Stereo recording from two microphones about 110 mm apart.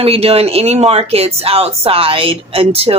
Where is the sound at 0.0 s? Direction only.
65° right (ahead or behind).